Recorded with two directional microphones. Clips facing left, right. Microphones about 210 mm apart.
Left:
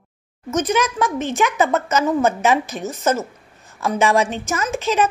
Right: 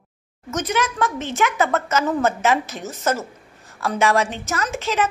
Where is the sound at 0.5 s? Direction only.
15° left (ahead or behind).